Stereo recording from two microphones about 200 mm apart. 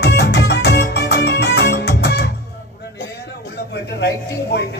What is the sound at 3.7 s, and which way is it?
Music, 55° left (ahead or behind).